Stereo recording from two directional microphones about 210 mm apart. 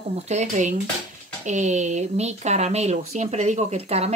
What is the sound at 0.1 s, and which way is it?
Speech, 30° right (ahead or behind).